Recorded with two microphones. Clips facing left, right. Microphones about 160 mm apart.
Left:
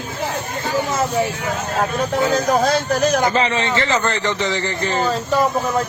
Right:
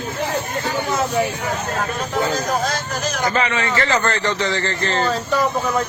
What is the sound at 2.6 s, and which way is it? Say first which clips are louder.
Speech: left 7 dB; 60° left (ahead or behind).